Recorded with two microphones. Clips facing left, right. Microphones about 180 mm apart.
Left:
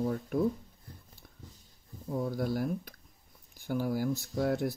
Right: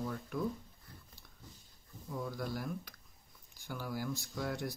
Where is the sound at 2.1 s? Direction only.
40° left (ahead or behind).